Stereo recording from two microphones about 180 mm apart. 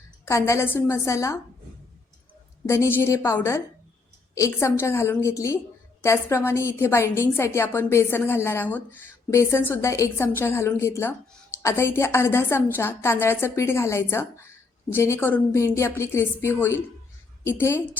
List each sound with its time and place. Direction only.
0.3 s a woman's voice: 15° left (ahead or behind)
2.6 s a woman's voice: 15° left (ahead or behind)